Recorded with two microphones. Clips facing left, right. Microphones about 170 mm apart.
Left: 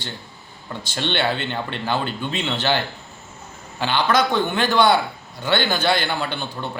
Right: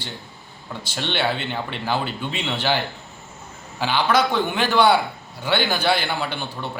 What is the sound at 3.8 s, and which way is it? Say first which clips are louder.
Speech: even; 10° right (ahead or behind).